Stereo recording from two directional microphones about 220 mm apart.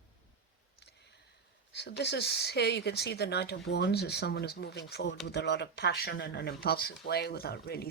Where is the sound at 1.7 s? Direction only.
50° left (ahead or behind).